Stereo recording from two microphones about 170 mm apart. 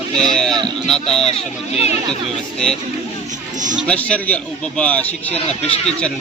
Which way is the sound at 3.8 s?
5° left (ahead or behind).